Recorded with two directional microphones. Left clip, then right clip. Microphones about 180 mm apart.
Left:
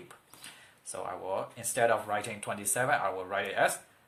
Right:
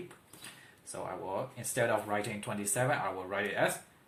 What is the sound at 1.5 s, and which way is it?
Speech, 45° left (ahead or behind).